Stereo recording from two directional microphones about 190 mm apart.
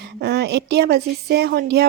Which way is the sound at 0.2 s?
60° right (ahead or behind).